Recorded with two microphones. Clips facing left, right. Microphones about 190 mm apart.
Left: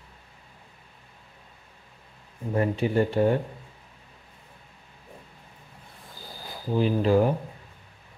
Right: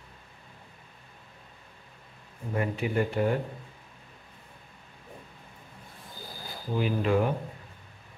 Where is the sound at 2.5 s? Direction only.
30° left (ahead or behind).